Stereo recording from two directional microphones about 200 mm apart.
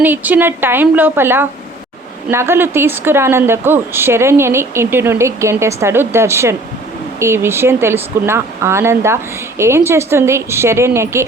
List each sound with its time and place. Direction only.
0.0 s speech: 10° right (ahead or behind)